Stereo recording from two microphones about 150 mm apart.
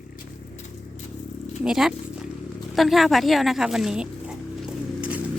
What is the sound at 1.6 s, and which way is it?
Speech, 5° right (ahead or behind).